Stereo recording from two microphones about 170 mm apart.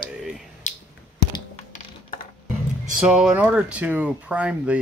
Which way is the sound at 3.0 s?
5° right (ahead or behind).